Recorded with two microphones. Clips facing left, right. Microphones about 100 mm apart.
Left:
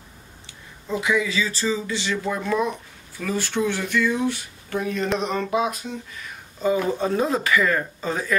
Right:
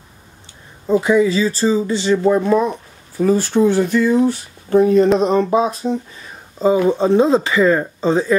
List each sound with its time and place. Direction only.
0.8 s speech: 40° right (ahead or behind)